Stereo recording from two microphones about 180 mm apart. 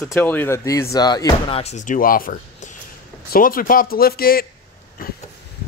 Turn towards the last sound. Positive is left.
turn(degrees=55)  # may be behind; listen again after turning